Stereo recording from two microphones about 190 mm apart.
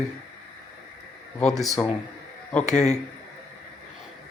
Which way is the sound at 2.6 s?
40° left (ahead or behind).